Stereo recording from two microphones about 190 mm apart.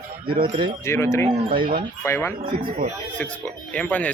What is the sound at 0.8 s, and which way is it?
Speech, 15° left (ahead or behind).